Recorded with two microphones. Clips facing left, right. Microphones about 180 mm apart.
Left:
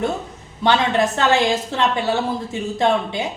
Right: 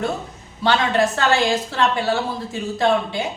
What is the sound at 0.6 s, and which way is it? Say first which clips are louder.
Speech: left 1 dB; 20° left (ahead or behind).